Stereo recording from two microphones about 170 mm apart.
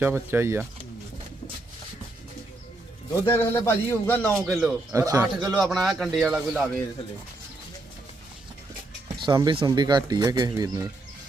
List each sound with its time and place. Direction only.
0.0 s speech: 15° right (ahead or behind)
3.2 s speech: 15° left (ahead or behind)
4.4 s a man's voice: centre (ahead or behind)
4.9 s speech: 20° right (ahead or behind)
5.4 s a man's voice: 5° right (ahead or behind)
9.2 s speech: 25° right (ahead or behind)